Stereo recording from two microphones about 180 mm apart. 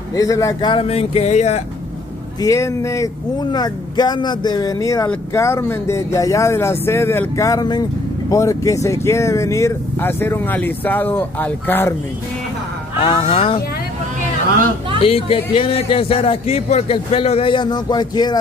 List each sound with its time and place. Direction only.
0.1 s a man's voice: 20° left (ahead or behind); by 1.6 s 35° left (ahead or behind)
2.4 s speech: 15° left (ahead or behind)
13.0 s a man's voice: 30° left (ahead or behind)
15.0 s a man's voice: 30° left (ahead or behind)